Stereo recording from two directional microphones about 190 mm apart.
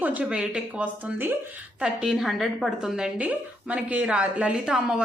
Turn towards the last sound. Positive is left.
turn(degrees=-5)  # may be behind; listen again after turning